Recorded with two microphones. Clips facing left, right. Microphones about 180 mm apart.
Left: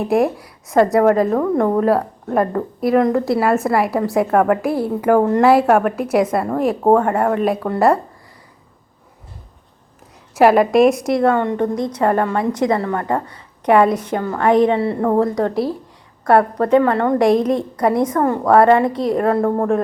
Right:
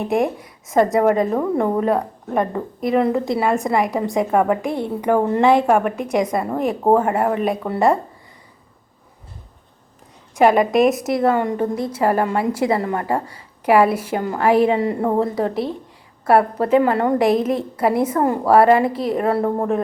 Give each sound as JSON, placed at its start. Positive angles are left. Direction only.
{"t": 0.0, "sound": "a woman's voice", "side_deg": 0}
{"t": 10.3, "sound": "a woman's voice", "side_deg": 0}
{"t": 13.1, "sound": "a woman's voice", "side_deg": -30}
{"t": 13.7, "sound": "a woman's voice", "side_deg": -5}